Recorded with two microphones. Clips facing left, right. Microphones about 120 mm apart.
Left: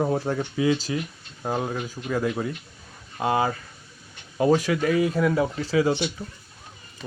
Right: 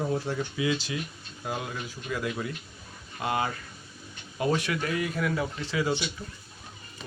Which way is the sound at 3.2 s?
30° left (ahead or behind).